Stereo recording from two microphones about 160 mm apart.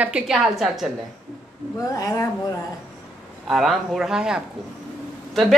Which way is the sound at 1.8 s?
20° left (ahead or behind).